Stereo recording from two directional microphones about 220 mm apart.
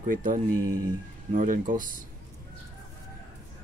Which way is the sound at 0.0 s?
40° right (ahead or behind).